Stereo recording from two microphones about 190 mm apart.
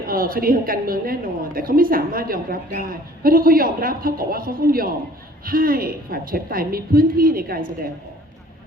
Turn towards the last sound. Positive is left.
turn(degrees=-50)  # may be behind; listen again after turning